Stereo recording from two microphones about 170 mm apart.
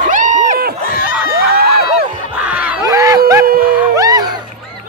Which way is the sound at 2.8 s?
20° right (ahead or behind).